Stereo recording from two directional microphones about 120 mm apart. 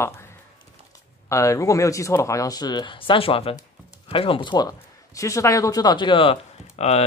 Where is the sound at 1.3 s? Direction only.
25° left (ahead or behind); by 6.3 s 45° left (ahead or behind).